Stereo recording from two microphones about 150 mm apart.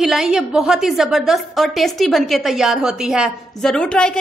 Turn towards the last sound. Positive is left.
turn(degrees=5)  # may be behind; listen again after turning